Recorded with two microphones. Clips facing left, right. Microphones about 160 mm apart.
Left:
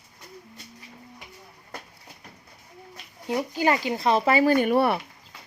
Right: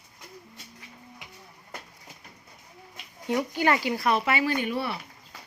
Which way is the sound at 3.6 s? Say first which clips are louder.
Left 3 dB; 20° left (ahead or behind).